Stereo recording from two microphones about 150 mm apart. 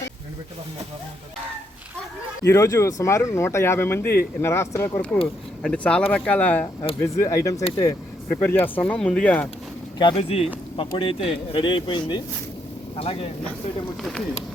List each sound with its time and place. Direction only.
2.4 s speech: 20° left (ahead or behind)
5.6 s speech: 10° left (ahead or behind)
7.0 s speech: 20° left (ahead or behind)
10.0 s speech: 35° left (ahead or behind)